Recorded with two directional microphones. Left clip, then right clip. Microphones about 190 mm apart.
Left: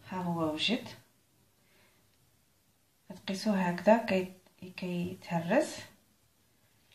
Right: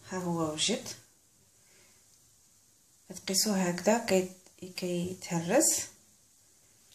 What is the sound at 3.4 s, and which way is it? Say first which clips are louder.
Speech: left 2 dB; 45° right (ahead or behind).